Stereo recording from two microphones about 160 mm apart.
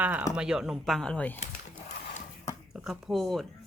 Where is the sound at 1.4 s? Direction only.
45° left (ahead or behind).